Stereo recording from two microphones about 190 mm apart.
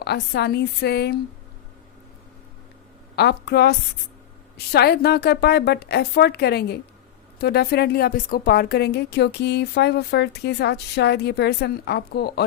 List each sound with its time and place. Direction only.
0.0 s a woman's voice: 60° left (ahead or behind)
3.2 s a woman's voice: 60° left (ahead or behind)